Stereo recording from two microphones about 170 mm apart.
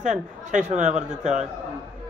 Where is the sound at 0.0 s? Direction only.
45° right (ahead or behind).